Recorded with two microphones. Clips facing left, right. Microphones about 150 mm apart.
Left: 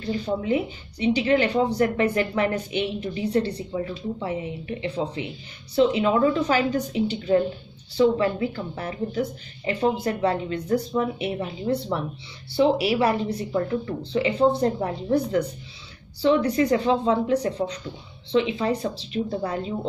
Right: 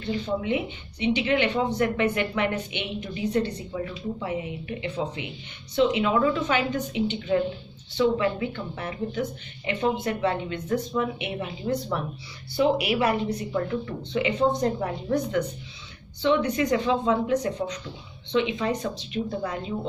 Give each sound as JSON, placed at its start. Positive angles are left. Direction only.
{"t": 0.0, "sound": "speech", "side_deg": 35}